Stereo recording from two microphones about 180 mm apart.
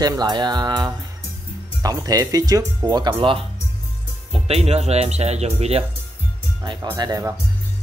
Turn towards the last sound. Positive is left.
turn(degrees=-20)  # may be behind; listen again after turning